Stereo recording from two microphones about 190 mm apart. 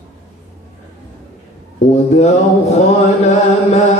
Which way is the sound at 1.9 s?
35° left (ahead or behind).